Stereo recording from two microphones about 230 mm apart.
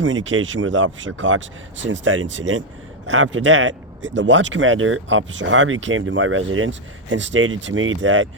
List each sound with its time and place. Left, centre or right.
0.0 s speech: right